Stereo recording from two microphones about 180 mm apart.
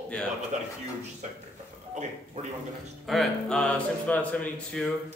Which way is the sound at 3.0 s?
Centre (ahead or behind).